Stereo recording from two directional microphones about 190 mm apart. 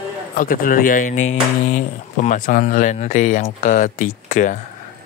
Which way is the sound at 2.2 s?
45° left (ahead or behind).